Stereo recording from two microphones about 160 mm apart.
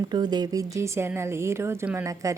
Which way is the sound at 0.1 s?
25° right (ahead or behind).